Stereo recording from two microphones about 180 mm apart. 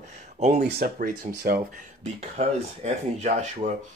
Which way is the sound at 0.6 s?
60° right (ahead or behind).